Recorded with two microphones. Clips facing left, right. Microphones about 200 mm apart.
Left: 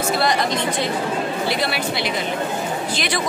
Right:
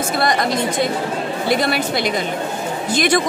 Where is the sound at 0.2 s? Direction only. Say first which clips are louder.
Right 2 dB; 50° right (ahead or behind).